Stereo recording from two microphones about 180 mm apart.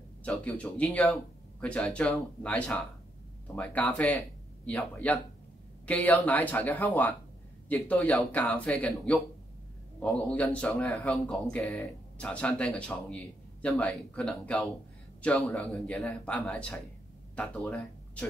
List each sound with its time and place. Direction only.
0.2 s a man's voice: 5° left (ahead or behind)
9.9 s a man's voice: 10° left (ahead or behind)